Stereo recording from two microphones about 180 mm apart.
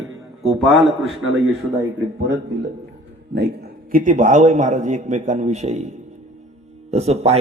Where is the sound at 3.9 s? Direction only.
45° right (ahead or behind).